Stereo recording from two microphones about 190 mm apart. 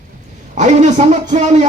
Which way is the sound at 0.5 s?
40° right (ahead or behind).